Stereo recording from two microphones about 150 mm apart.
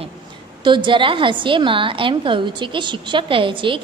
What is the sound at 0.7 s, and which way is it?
A woman's voice, 30° right (ahead or behind).